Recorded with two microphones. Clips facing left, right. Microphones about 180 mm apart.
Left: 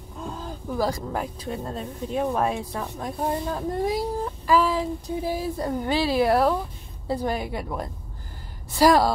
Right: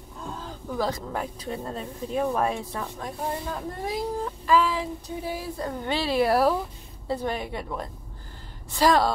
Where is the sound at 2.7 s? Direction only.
15° left (ahead or behind).